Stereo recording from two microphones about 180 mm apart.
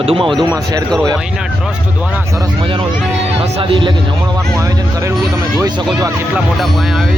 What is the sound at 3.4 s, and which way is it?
Speech, 30° right (ahead or behind).